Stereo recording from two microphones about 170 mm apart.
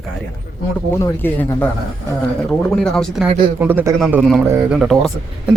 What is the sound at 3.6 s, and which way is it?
A man's voice, 10° right (ahead or behind).